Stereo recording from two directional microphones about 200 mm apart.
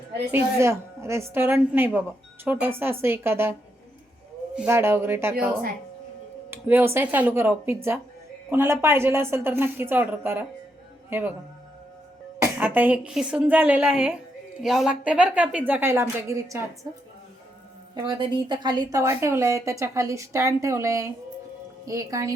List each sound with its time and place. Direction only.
0.6 s a woman's voice: 15° right (ahead or behind)
4.5 s a woman's voice: 10° right (ahead or behind)
6.5 s a woman's voice: 10° right (ahead or behind)
12.4 s a woman's voice: 10° right (ahead or behind)
17.9 s a woman's voice: 25° right (ahead or behind)